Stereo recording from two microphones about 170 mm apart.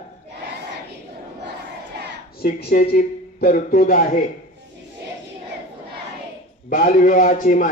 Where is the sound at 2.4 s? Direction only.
65° left (ahead or behind).